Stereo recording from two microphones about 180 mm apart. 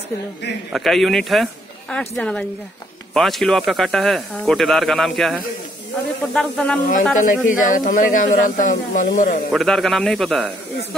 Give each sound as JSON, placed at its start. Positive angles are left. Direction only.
{"t": 0.7, "sound": "speech", "side_deg": 0}
{"t": 7.2, "sound": "speech", "side_deg": 45}
{"t": 9.5, "sound": "speech", "side_deg": 0}